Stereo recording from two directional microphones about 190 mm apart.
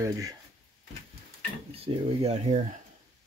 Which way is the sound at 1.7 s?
30° right (ahead or behind).